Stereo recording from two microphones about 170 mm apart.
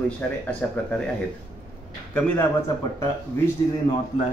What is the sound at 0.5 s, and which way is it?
Speech, 5° left (ahead or behind).